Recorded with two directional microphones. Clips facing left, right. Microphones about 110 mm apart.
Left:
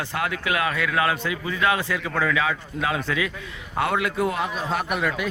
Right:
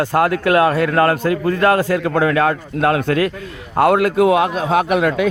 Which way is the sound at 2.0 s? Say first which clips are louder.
Right 8 dB; 60° right (ahead or behind).